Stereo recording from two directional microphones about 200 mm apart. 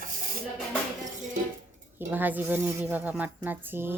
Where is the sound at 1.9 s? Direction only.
10° right (ahead or behind).